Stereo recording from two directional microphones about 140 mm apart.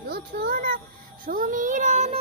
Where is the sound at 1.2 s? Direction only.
75° right (ahead or behind); by 2.2 s 55° right (ahead or behind).